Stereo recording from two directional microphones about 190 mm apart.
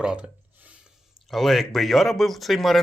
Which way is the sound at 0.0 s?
5° right (ahead or behind).